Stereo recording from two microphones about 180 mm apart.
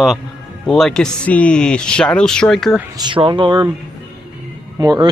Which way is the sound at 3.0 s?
25° right (ahead or behind).